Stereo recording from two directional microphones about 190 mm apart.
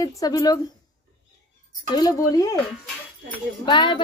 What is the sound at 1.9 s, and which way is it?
Speech, 20° left (ahead or behind).